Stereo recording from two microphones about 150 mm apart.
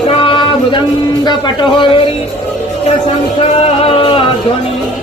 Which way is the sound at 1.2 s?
30° left (ahead or behind).